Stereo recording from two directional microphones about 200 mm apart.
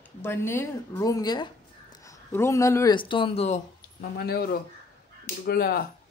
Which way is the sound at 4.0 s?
50° left (ahead or behind).